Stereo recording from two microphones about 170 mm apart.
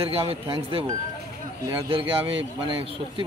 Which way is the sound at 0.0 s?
35° right (ahead or behind).